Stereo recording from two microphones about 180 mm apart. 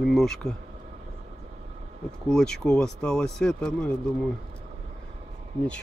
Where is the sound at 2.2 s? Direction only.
5° left (ahead or behind).